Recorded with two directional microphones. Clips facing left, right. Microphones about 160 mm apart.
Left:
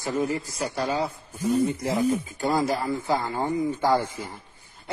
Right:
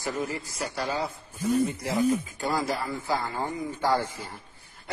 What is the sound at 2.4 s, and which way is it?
A man's voice, 25° left (ahead or behind).